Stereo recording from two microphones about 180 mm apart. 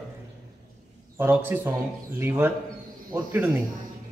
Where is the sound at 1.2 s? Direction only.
10° right (ahead or behind).